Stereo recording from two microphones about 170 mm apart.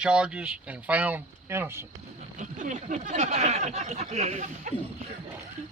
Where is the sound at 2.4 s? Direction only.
45° right (ahead or behind).